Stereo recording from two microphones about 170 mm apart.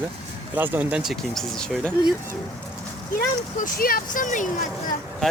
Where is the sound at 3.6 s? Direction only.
55° left (ahead or behind).